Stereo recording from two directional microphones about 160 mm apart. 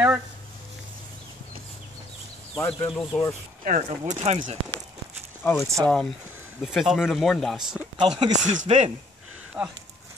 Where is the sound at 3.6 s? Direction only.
50° right (ahead or behind).